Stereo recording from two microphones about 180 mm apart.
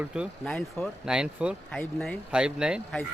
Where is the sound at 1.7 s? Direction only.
5° left (ahead or behind).